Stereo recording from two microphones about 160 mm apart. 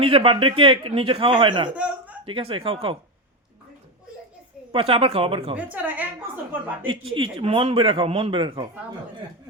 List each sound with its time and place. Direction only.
0.0 s speech: 35° right (ahead or behind)
1.7 s a man's voice: 10° right (ahead or behind)
2.2 s speech: 35° right (ahead or behind)
4.7 s speech: 35° right (ahead or behind)
5.7 s a woman's voice: 10° right (ahead or behind)
6.8 s speech: 35° right (ahead or behind)